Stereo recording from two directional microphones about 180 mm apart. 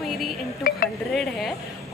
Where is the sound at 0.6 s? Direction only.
50° left (ahead or behind).